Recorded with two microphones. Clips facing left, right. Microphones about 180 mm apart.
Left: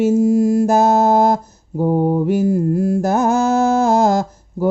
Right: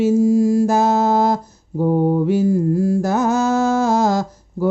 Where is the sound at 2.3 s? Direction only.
50° left (ahead or behind).